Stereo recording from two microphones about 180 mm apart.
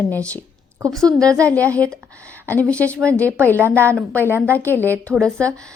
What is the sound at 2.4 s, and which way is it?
A woman's voice, 10° left (ahead or behind).